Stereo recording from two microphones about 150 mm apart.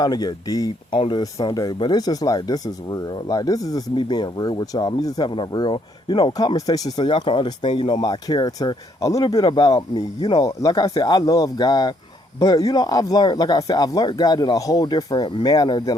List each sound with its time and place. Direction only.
0.0 s speech: 25° left (ahead or behind)
0.9 s speech: 35° left (ahead or behind)
1.2 s speech: 25° left (ahead or behind)